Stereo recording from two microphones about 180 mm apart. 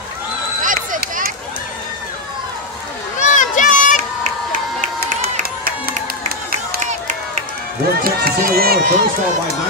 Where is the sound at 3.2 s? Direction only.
45° left (ahead or behind).